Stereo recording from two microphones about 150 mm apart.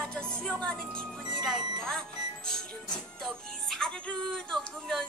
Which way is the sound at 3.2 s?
5° left (ahead or behind).